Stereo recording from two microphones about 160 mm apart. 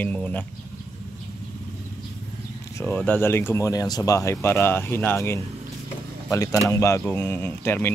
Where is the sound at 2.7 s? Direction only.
10° left (ahead or behind).